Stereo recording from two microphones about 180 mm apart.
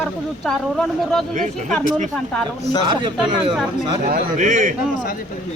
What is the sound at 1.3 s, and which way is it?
Speech, 40° right (ahead or behind).